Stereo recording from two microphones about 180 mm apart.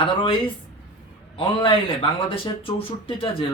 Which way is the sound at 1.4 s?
30° left (ahead or behind).